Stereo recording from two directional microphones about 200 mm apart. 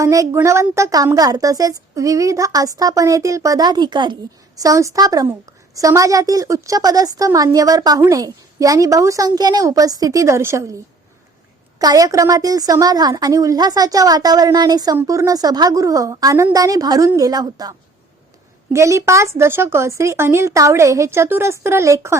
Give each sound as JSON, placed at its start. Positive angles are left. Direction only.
{"t": 0.0, "sound": "a woman's voice", "side_deg": -15}
{"t": 11.8, "sound": "a woman's voice", "side_deg": -20}